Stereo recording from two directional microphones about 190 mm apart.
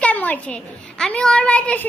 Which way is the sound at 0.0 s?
10° left (ahead or behind).